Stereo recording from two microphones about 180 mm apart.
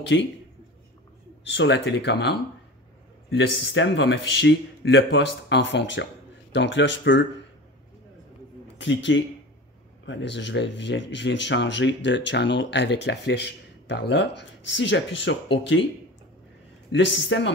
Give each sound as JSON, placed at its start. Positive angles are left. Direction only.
{"t": 0.0, "sound": "speech", "side_deg": 75}
{"t": 1.4, "sound": "speech", "side_deg": 85}
{"t": 8.8, "sound": "speech", "side_deg": 85}
{"t": 16.9, "sound": "speech", "side_deg": 90}